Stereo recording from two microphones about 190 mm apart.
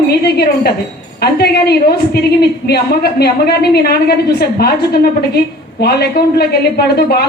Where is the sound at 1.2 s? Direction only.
60° left (ahead or behind).